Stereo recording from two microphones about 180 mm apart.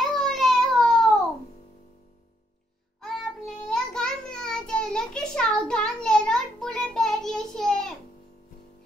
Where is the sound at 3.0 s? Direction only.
Centre (ahead or behind).